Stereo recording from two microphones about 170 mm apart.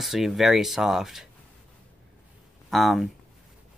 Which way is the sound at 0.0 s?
Centre (ahead or behind).